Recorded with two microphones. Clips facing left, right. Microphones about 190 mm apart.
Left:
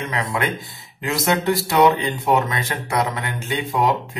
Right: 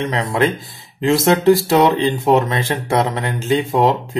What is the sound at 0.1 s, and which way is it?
Speech, 25° right (ahead or behind).